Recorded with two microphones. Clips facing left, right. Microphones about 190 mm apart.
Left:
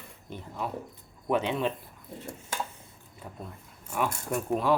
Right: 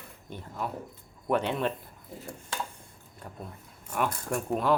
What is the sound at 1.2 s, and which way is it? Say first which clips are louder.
Speech: even; 5° left (ahead or behind).